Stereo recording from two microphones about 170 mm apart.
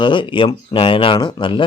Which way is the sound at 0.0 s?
30° left (ahead or behind).